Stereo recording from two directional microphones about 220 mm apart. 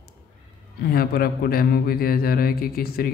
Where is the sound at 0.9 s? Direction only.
40° left (ahead or behind).